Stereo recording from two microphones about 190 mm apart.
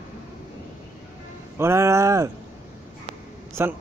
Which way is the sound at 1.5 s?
15° right (ahead or behind).